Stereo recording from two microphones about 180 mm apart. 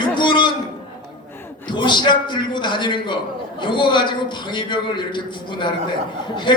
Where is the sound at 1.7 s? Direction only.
25° left (ahead or behind).